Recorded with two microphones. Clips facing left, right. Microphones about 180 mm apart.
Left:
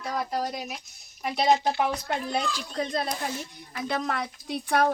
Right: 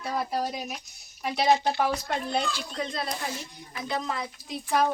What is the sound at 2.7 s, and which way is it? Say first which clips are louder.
Speech: left 6 dB; 40° left (ahead or behind).